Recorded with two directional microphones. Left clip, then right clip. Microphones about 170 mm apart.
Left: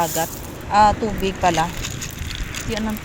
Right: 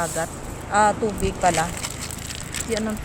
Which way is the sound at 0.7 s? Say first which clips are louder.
Left 4 dB; centre (ahead or behind).